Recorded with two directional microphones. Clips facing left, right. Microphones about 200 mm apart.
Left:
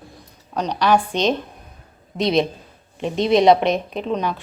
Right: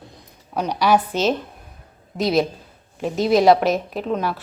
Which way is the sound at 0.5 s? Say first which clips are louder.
Even; 10° right (ahead or behind).